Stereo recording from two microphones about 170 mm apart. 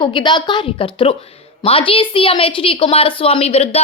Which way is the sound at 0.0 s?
30° left (ahead or behind).